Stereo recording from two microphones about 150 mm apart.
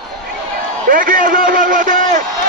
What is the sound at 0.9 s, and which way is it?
A man's voice, 65° right (ahead or behind).